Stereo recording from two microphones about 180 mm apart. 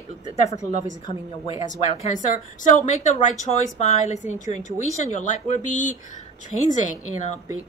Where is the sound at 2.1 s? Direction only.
45° left (ahead or behind).